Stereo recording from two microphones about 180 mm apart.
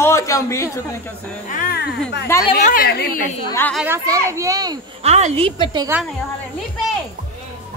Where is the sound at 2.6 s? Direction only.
50° left (ahead or behind).